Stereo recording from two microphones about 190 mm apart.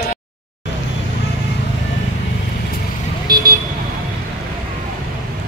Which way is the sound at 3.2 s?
50° right (ahead or behind).